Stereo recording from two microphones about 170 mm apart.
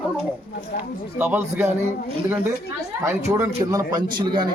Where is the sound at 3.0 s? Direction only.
20° right (ahead or behind).